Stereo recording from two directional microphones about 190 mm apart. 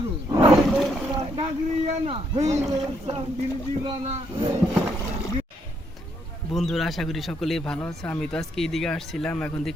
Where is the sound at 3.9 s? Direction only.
30° right (ahead or behind).